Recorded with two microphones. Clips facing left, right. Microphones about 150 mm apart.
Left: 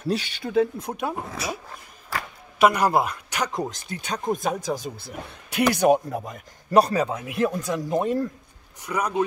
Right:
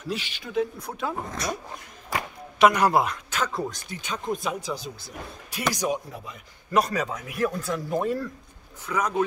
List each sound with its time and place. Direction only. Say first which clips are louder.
0.0 s speech: left 6 dB; 35° left (ahead or behind)
0.8 s a man's voice: left 2 dB; 15° left (ahead or behind)
2.6 s a man's voice: even; 5° left (ahead or behind)
3.3 s speech: left 1 dB; 15° left (ahead or behind)
4.1 s a man's voice: left 3 dB; 45° left (ahead or behind)
6.8 s a man's voice: left 5 dB; 30° left (ahead or behind); by 9.1 s 10° left (ahead or behind)